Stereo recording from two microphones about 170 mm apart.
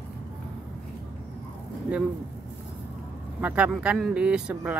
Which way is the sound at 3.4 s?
10° right (ahead or behind).